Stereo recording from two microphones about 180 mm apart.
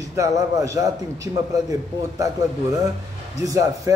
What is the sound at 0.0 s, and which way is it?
A man's voice, 20° right (ahead or behind).